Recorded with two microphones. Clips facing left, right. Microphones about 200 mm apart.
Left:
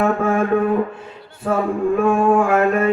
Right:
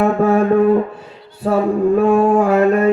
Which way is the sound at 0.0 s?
40° right (ahead or behind).